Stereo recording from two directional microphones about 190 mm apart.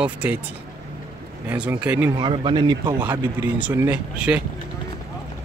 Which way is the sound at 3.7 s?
10° right (ahead or behind).